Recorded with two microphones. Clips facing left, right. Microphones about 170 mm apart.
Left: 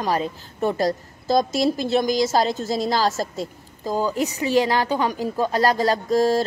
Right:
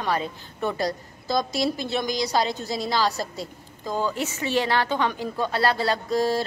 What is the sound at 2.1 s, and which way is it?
A woman's voice, 45° left (ahead or behind).